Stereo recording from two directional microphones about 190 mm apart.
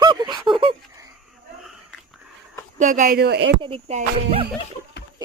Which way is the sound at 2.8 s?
45° right (ahead or behind).